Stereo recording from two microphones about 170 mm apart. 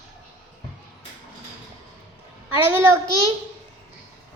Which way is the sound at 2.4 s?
15° right (ahead or behind).